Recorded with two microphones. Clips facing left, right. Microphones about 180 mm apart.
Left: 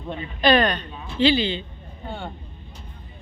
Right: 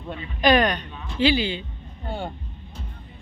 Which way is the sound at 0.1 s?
10° right (ahead or behind).